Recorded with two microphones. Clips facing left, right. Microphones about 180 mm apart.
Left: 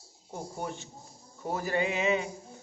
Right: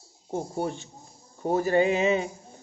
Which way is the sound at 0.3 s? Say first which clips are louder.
Right 7 dB; 35° right (ahead or behind).